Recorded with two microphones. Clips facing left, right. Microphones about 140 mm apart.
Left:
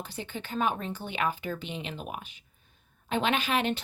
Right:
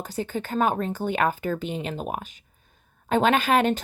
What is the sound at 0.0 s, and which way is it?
Speech, 40° right (ahead or behind).